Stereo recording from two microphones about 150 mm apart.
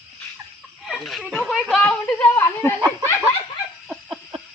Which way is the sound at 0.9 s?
Centre (ahead or behind).